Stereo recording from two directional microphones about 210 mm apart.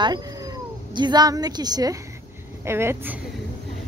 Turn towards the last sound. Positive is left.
turn(degrees=-10)  # may be behind; listen again after turning